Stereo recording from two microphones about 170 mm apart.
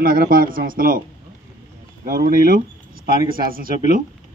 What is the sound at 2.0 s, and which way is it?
A man's voice, 55° right (ahead or behind).